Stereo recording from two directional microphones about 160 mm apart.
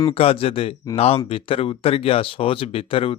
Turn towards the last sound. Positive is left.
turn(degrees=35)  # may be behind; listen again after turning